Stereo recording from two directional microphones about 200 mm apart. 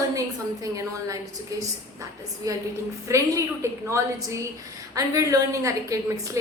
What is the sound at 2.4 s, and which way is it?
A woman's voice, 15° right (ahead or behind).